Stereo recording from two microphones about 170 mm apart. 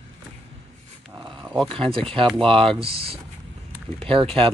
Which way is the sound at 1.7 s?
30° right (ahead or behind).